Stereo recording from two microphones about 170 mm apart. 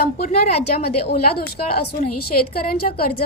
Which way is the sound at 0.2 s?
40° left (ahead or behind).